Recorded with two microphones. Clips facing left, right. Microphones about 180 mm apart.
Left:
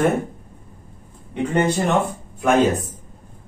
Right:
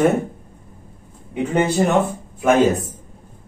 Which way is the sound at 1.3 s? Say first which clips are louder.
Right 1 dB; 10° right (ahead or behind).